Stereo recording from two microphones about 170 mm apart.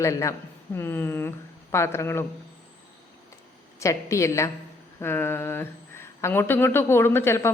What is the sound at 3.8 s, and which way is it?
A man's voice, 20° left (ahead or behind).